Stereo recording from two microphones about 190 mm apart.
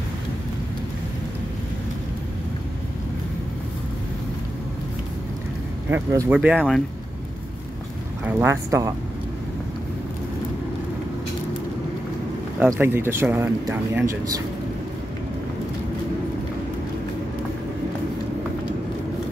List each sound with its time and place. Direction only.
5.9 s speech: 10° right (ahead or behind)
8.3 s speech: 10° right (ahead or behind)
12.5 s speech: 10° right (ahead or behind)